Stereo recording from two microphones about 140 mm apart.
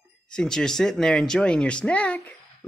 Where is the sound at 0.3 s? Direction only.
5° left (ahead or behind).